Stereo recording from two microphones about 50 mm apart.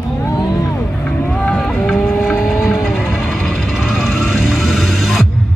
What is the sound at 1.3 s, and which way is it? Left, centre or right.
Music, centre.